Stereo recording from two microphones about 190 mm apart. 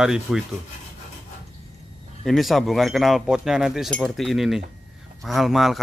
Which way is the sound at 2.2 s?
Centre (ahead or behind).